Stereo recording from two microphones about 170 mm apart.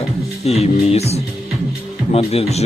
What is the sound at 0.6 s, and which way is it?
Speech, 40° left (ahead or behind).